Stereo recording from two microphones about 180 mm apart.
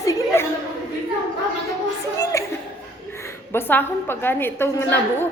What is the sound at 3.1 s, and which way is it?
A woman's voice, 15° left (ahead or behind).